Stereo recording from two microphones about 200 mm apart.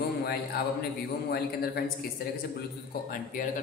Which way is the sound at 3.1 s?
45° left (ahead or behind).